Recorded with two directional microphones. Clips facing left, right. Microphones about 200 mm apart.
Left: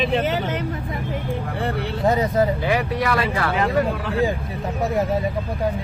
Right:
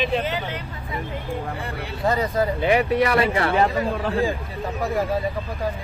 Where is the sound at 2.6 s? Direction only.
20° right (ahead or behind).